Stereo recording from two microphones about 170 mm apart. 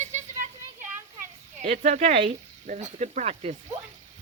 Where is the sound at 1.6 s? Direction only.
45° right (ahead or behind).